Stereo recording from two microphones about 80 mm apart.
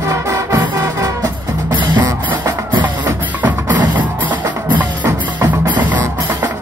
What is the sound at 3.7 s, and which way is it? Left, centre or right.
Music, right.